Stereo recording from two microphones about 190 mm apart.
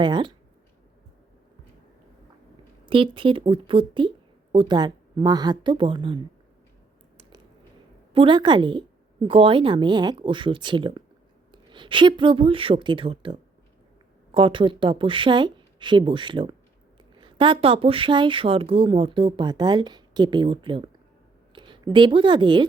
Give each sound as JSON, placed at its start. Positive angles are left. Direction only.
{"t": 0.0, "sound": "speech", "side_deg": -25}
{"t": 2.8, "sound": "speech", "side_deg": -25}
{"t": 8.1, "sound": "speech", "side_deg": -25}
{"t": 14.3, "sound": "a woman's voice", "side_deg": -25}